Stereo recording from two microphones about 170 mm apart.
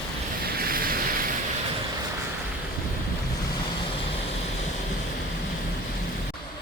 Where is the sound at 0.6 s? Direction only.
60° right (ahead or behind).